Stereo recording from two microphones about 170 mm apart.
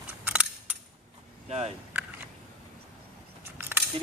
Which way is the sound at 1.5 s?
40° right (ahead or behind).